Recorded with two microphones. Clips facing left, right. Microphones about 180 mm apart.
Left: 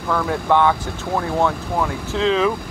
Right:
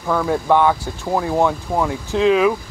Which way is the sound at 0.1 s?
10° right (ahead or behind).